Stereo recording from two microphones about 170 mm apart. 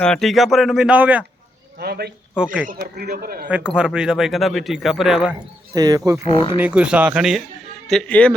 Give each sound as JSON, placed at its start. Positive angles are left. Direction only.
{"t": 0.0, "sound": "speech", "side_deg": 5}
{"t": 1.8, "sound": "speech", "side_deg": -70}
{"t": 2.3, "sound": "speech", "side_deg": -5}
{"t": 2.6, "sound": "speech", "side_deg": -55}
{"t": 3.8, "sound": "speech", "side_deg": -5}
{"t": 5.7, "sound": "speech", "side_deg": -20}
{"t": 6.2, "sound": "speech", "side_deg": 30}
{"t": 6.6, "sound": "speech", "side_deg": -5}